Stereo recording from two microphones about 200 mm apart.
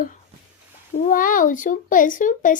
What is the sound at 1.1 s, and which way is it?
A woman's voice, 45° left (ahead or behind).